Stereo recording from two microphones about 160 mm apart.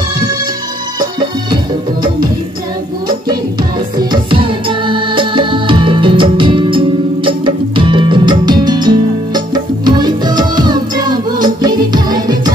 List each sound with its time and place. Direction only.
4.0 s music: 30° right (ahead or behind)